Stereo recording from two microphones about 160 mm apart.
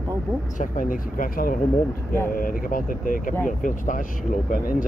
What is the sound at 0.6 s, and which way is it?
Speech, 60° left (ahead or behind).